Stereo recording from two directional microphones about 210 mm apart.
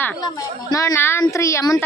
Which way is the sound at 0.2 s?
15° left (ahead or behind).